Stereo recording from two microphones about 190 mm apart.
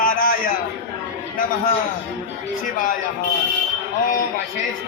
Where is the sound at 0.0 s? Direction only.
45° left (ahead or behind).